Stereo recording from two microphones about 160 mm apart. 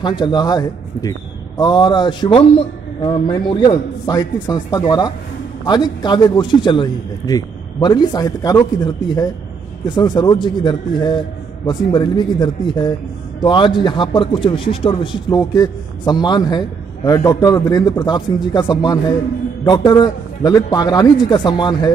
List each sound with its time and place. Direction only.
0.0 s a man's voice: 30° left (ahead or behind)